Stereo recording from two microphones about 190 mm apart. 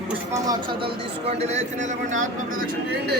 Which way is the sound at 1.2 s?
35° right (ahead or behind).